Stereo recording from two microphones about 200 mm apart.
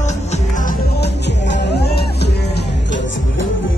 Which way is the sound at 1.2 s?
60° left (ahead or behind).